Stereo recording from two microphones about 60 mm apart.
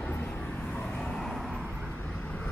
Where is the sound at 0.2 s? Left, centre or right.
Left; by 1.6 s centre.